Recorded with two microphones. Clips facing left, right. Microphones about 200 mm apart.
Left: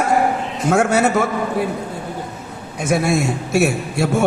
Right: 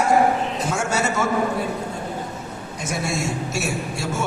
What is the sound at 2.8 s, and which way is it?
A man's voice, 60° left (ahead or behind).